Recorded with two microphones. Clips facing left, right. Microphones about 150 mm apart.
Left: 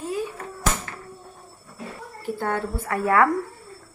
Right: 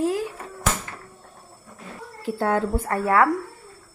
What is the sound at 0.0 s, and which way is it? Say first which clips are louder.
Bouncing: right 5 dB; 90° right.